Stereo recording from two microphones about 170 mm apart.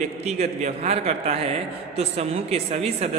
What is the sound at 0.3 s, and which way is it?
Speech, 40° right (ahead or behind).